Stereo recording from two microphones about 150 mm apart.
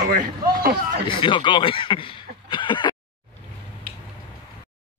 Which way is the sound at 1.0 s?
35° left (ahead or behind).